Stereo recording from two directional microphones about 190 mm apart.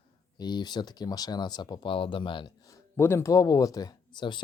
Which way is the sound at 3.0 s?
15° left (ahead or behind).